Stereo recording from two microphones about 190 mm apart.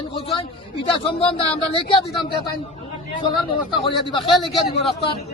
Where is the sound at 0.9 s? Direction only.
30° left (ahead or behind).